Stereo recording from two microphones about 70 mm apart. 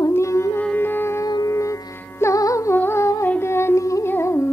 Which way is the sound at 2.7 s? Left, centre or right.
Left.